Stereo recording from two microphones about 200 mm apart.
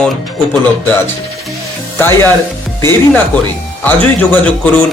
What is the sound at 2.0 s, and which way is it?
Speech, 10° left (ahead or behind).